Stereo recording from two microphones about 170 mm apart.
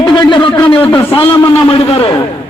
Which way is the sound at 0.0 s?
30° left (ahead or behind).